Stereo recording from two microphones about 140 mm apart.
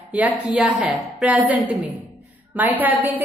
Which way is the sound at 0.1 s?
10° right (ahead or behind).